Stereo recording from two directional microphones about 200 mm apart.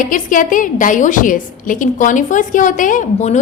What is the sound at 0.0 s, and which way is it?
A woman's voice, 40° left (ahead or behind).